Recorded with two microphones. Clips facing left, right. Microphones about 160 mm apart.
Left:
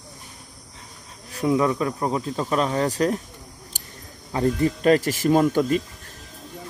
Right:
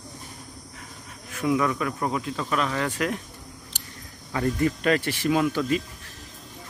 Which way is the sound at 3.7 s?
45° left (ahead or behind).